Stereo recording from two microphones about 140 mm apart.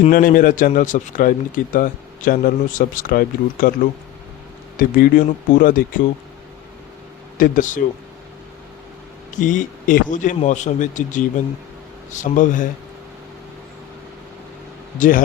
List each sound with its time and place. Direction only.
0.1 s a man's voice: 90° left
4.8 s speech: 90° left
7.3 s a man's voice: 80° left
9.3 s speech: 65° left (ahead or behind)
14.9 s a man's voice: 70° left (ahead or behind)